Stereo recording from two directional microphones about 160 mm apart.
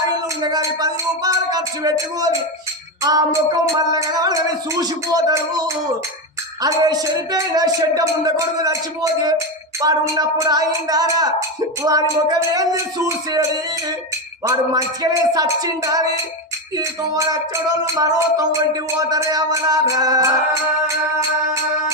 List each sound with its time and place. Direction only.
0.4 s music: 25° right (ahead or behind)
14.4 s music: 20° right (ahead or behind)